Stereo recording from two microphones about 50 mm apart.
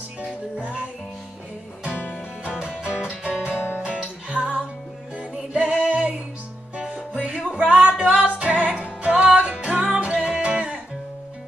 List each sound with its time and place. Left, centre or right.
0.2 s music: right
1.9 s music: left
2.8 s music: centre
3.5 s music: left
3.8 s music: right
5.5 s music: centre
7.2 s music: right